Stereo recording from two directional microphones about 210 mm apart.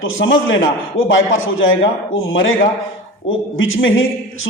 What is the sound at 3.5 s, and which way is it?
Speech, 70° left (ahead or behind).